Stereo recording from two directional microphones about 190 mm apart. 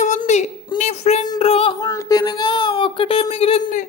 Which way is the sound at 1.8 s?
20° left (ahead or behind).